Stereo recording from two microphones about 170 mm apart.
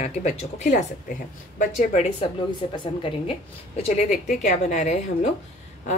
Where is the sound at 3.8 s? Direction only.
40° left (ahead or behind).